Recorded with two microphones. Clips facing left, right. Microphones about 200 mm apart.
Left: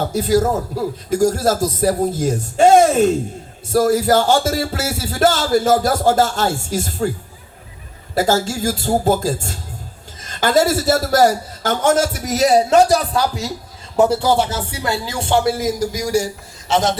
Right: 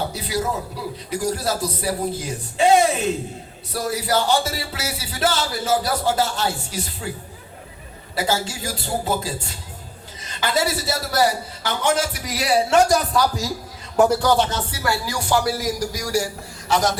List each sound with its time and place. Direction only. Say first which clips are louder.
0.0 s speech: left 9 dB; 45° left (ahead or behind)
8.1 s speech: left 6 dB; 45° left (ahead or behind)
13.9 s a man's voice: left 2 dB; 25° left (ahead or behind)